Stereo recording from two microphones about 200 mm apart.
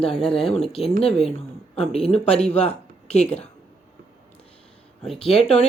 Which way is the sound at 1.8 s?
5° left (ahead or behind).